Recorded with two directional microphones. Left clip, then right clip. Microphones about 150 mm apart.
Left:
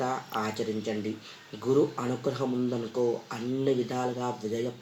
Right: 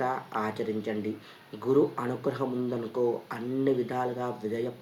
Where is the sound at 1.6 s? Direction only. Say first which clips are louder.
Right 1 dB; 10° right (ahead or behind).